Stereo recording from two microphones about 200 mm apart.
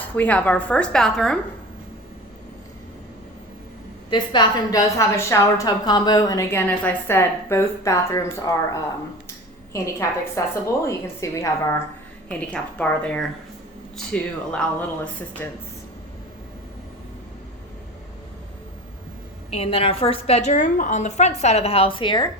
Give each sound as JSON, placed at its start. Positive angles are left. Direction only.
{"t": 0.2, "sound": "speech", "side_deg": 5}
{"t": 4.1, "sound": "a woman's voice", "side_deg": 25}
{"t": 19.5, "sound": "a woman's voice", "side_deg": 30}